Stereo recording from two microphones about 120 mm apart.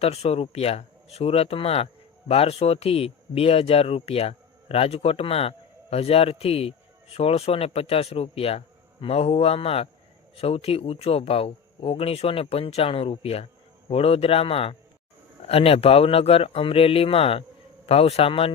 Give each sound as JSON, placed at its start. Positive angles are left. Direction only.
{"t": 0.0, "sound": "a man's voice", "side_deg": 60}